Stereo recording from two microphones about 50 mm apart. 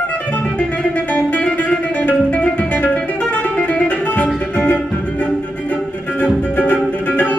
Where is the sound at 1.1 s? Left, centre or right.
Left.